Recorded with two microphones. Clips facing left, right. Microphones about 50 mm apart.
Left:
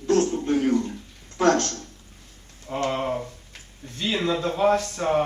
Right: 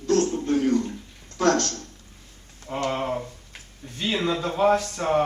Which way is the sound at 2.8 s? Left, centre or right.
Centre.